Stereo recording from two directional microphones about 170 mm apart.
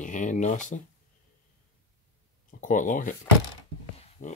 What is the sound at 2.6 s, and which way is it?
Speech, 50° left (ahead or behind).